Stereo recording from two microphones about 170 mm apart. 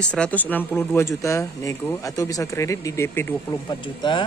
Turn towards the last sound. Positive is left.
turn(degrees=25)  # may be behind; listen again after turning